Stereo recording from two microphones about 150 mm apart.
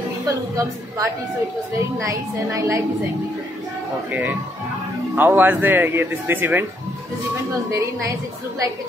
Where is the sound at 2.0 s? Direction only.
20° right (ahead or behind).